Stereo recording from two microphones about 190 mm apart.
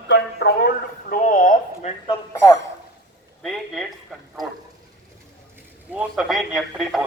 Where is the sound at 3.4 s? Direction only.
Centre (ahead or behind).